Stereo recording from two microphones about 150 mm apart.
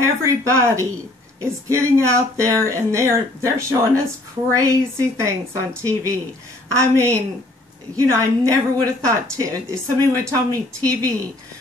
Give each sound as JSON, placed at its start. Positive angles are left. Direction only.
{"t": 0.0, "sound": "speech", "side_deg": -20}